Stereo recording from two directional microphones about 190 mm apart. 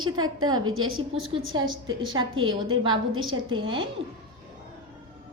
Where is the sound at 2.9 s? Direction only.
90° right.